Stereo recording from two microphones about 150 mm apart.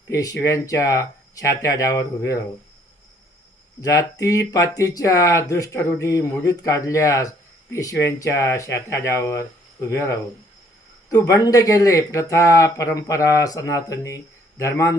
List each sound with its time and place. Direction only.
0.1 s speech: 20° left (ahead or behind)
3.8 s speech: 25° left (ahead or behind)